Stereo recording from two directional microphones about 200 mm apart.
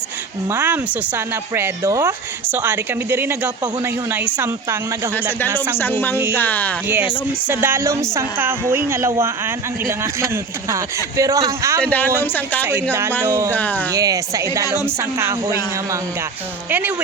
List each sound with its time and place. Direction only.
0.4 s speech: 10° right (ahead or behind)
5.7 s speech: 10° left (ahead or behind)
6.8 s speech: 10° right (ahead or behind)
11.8 s speech: 10° left (ahead or behind)
12.9 s speech: 10° right (ahead or behind)
13.5 s speech: 10° left (ahead or behind)
13.9 s speech: 15° right (ahead or behind)